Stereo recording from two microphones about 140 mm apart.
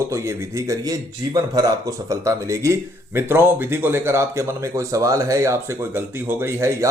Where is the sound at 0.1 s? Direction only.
20° right (ahead or behind).